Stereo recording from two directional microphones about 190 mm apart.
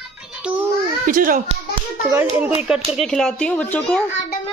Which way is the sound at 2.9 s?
Centre (ahead or behind).